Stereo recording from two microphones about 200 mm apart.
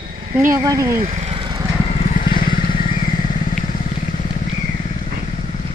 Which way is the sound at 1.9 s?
40° left (ahead or behind).